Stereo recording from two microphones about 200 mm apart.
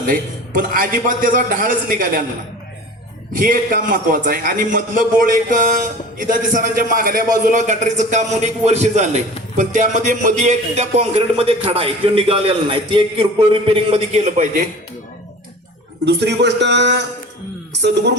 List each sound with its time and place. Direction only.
0.0 s a man's voice: 45° right (ahead or behind)
3.3 s a man's voice: 45° right (ahead or behind)
16.0 s a man's voice: 60° right (ahead or behind)